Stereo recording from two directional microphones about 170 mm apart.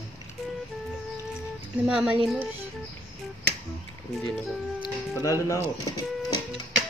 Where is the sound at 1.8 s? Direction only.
5° right (ahead or behind).